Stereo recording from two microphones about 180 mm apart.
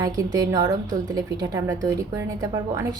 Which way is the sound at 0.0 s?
20° right (ahead or behind).